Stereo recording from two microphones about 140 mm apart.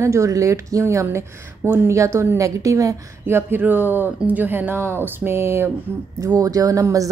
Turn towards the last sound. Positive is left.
turn(degrees=-25)  # may be behind; listen again after turning